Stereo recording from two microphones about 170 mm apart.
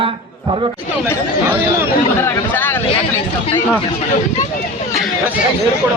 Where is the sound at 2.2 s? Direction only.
10° left (ahead or behind).